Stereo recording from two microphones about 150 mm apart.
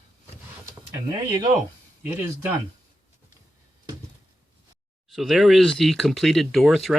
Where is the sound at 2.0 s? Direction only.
15° right (ahead or behind).